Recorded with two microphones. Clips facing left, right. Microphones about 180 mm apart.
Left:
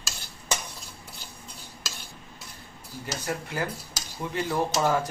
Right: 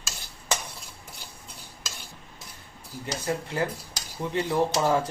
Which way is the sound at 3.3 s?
25° right (ahead or behind).